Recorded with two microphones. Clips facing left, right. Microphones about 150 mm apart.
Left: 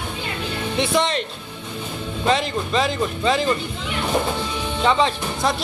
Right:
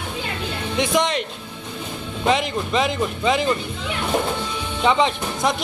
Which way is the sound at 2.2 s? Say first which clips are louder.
Even; 15° right (ahead or behind).